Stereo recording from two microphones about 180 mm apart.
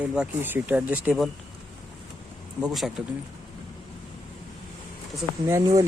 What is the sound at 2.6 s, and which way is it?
Speech, centre (ahead or behind).